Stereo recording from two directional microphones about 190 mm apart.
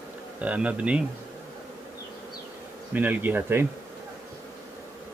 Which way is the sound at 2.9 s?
10° right (ahead or behind).